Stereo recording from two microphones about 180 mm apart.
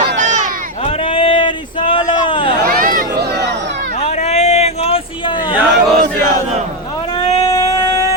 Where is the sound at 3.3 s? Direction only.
70° right (ahead or behind).